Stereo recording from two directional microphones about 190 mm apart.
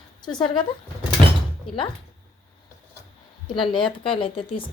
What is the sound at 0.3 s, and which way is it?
Speech, 25° left (ahead or behind).